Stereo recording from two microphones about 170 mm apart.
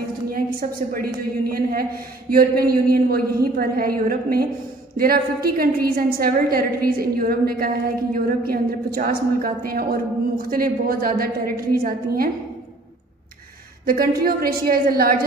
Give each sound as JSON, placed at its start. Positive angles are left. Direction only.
{"t": 0.3, "sound": "a woman's voice", "side_deg": -60}
{"t": 13.8, "sound": "a woman's voice", "side_deg": -60}